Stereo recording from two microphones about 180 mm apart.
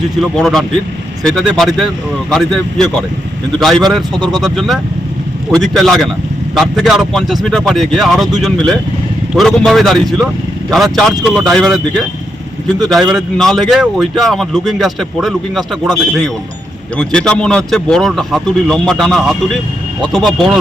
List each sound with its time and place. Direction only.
0.2 s a man's voice: centre (ahead or behind)
4.1 s speech: 25° right (ahead or behind)
4.4 s a man's voice: centre (ahead or behind)